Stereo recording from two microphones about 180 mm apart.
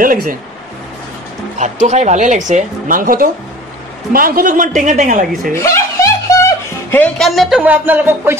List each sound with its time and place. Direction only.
0.0 s a woman's voice: 50° right (ahead or behind)
1.6 s a woman's voice: 40° right (ahead or behind)
5.5 s speech: 15° left (ahead or behind); by 8.4 s 10° right (ahead or behind)